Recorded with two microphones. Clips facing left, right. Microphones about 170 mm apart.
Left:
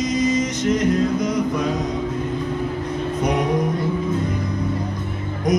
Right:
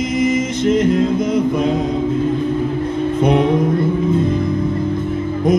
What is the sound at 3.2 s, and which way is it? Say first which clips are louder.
Music: right 7 dB; 25° right (ahead or behind).